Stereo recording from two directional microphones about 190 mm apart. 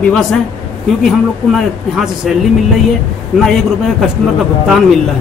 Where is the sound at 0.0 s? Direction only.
5° left (ahead or behind).